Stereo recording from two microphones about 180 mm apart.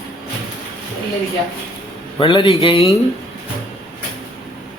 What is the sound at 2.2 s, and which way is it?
Speech, 30° left (ahead or behind).